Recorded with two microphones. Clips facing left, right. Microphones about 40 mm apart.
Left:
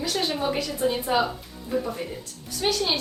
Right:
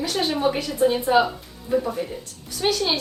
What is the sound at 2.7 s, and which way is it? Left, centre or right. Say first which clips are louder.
Speech: right 2 dB; right.